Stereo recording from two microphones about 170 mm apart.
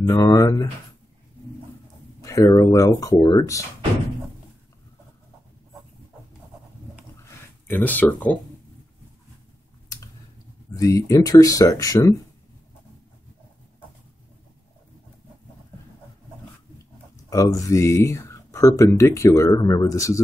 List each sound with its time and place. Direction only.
0.0 s speech: 20° left (ahead or behind)
2.2 s speech: 20° left (ahead or behind)
7.2 s a sound: 10° left (ahead or behind)
10.7 s speech: 20° left (ahead or behind)
17.3 s speech: 20° left (ahead or behind)